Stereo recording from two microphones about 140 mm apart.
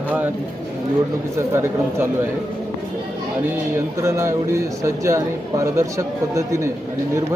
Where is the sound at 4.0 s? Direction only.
20° right (ahead or behind).